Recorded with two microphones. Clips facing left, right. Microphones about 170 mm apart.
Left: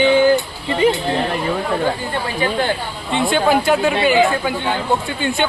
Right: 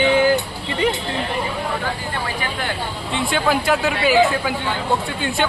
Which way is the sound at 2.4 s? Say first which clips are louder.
Left 7 dB; 30° left (ahead or behind).